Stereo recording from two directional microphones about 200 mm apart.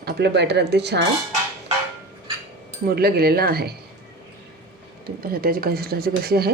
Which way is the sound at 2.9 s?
50° right (ahead or behind).